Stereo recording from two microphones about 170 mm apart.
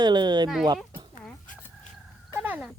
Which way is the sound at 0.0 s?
25° right (ahead or behind).